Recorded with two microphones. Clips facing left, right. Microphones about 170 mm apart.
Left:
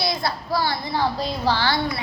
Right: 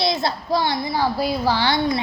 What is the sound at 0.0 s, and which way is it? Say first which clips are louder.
A child's voice: right 3 dB; 25° right (ahead or behind).